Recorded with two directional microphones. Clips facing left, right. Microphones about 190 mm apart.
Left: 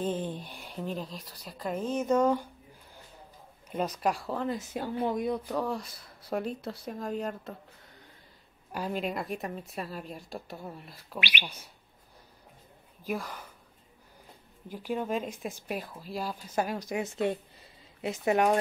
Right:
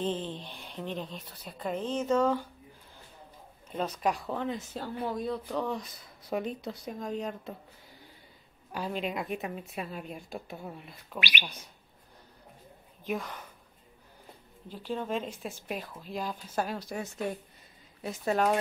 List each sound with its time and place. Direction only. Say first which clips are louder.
0.0 s speech: left 1 dB; 10° left (ahead or behind)
3.7 s speech: left 1 dB; 10° left (ahead or behind)
4.7 s speech: left 4 dB; 15° left (ahead or behind)
8.7 s speech: left 1 dB; 5° left (ahead or behind)
11.1 s bird: even; 40° right (ahead or behind)
13.0 s speech: even; 5° left (ahead or behind)
14.7 s speech: left 2 dB; 10° left (ahead or behind)